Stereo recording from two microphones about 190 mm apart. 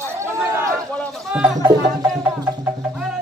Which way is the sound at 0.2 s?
15° right (ahead or behind).